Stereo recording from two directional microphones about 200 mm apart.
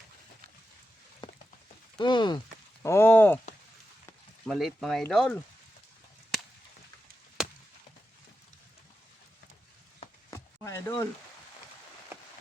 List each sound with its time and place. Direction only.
1.2 s a sound: 20° left (ahead or behind)
2.0 s speech: 20° left (ahead or behind)
2.8 s speech: 10° left (ahead or behind)
4.4 s speech: centre (ahead or behind)
7.4 s chop: 5° right (ahead or behind)
10.2 s a sound: 15° left (ahead or behind)